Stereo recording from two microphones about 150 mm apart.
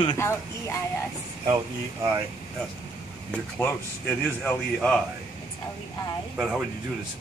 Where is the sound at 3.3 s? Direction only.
10° left (ahead or behind).